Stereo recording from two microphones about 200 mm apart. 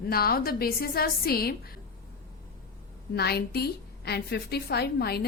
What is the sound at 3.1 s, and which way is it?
A woman's voice, 55° left (ahead or behind).